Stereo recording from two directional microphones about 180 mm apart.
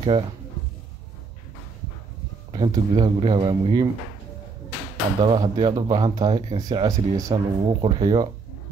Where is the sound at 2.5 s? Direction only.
25° right (ahead or behind).